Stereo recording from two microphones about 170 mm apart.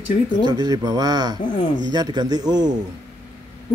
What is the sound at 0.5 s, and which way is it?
A man's voice, 20° right (ahead or behind).